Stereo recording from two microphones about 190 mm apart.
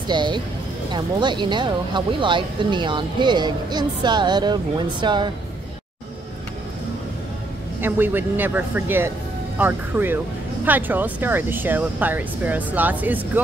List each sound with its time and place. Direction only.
0.1 s speech: 25° right (ahead or behind)
7.8 s speech: 10° right (ahead or behind)